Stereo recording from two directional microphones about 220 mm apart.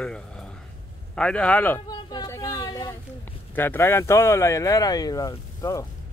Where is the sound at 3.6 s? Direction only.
10° left (ahead or behind).